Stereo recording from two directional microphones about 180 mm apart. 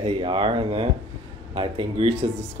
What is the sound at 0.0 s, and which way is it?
Speech, 30° right (ahead or behind).